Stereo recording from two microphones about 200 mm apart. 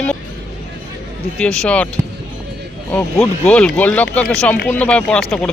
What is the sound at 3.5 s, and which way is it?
A man's voice, 5° left (ahead or behind).